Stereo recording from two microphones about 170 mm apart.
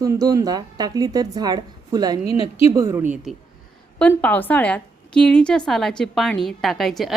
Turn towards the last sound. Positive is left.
turn(degrees=0)  # may be behind; listen again after turning